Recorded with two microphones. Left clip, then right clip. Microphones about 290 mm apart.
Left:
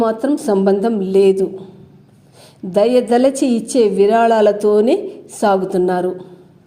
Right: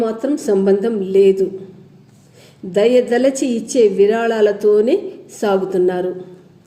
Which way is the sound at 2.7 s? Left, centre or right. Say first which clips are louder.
Even; left.